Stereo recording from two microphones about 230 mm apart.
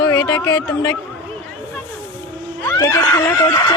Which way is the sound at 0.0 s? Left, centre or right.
Centre.